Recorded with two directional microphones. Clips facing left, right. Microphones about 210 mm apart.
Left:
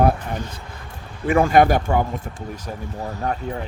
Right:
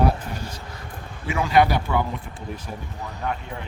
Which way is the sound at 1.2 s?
50° left (ahead or behind).